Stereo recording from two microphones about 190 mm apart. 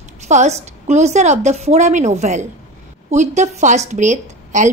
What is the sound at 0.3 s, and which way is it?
A woman's voice, 35° right (ahead or behind).